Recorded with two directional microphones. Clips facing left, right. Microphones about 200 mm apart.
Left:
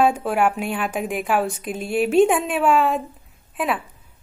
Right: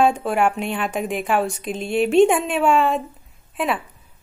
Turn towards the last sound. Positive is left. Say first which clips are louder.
# right 1 dB
turn(degrees=0)  # may be behind; listen again after turning